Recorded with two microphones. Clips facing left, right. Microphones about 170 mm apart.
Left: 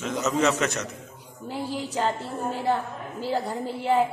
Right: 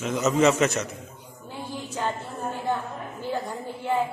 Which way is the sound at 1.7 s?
90° left.